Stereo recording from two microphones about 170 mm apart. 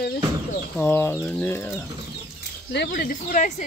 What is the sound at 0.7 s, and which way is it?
Speech, 10° left (ahead or behind).